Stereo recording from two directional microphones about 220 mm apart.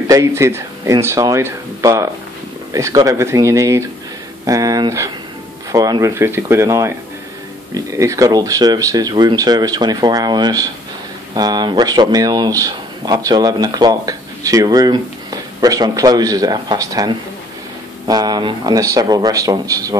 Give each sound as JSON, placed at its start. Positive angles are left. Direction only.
{"t": 0.1, "sound": "speech", "side_deg": -15}